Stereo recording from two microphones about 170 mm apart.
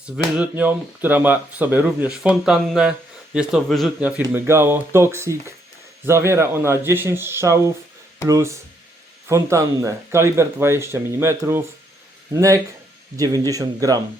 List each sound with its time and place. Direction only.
0.0 s a man's voice: 10° right (ahead or behind)
4.2 s speech: 15° right (ahead or behind)
13.1 s speech: 20° right (ahead or behind)